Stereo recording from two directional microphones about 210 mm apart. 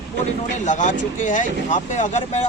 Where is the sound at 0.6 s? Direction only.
35° left (ahead or behind).